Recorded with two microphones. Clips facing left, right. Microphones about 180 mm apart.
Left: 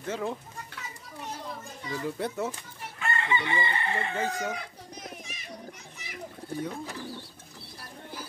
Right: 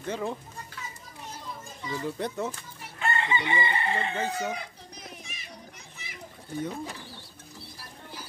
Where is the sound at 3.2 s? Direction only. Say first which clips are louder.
Right 1 dB; 20° right (ahead or behind).